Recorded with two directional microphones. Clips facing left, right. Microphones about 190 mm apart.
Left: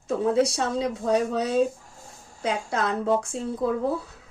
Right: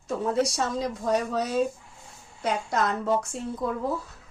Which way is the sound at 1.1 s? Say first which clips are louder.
Left 3 dB; 30° left (ahead or behind).